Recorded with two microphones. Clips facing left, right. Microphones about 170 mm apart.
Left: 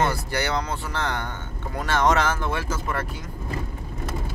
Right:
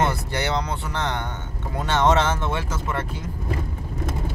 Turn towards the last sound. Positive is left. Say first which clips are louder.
# even
turn(degrees=-25)  # may be behind; listen again after turning